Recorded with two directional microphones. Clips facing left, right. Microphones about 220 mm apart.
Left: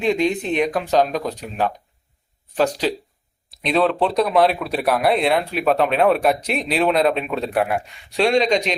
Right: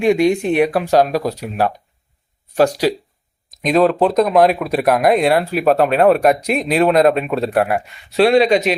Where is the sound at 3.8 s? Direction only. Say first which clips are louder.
Right 5 dB; 45° right (ahead or behind).